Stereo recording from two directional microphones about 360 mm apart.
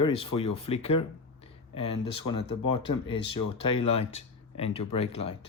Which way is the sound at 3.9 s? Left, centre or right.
Centre.